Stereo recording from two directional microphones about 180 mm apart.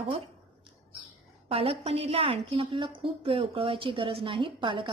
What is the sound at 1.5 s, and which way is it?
A woman's voice, 30° right (ahead or behind).